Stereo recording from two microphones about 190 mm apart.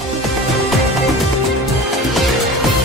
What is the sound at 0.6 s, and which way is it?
Music, centre (ahead or behind).